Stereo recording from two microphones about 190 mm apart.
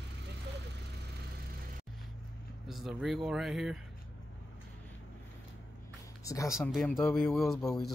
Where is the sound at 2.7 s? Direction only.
Centre (ahead or behind).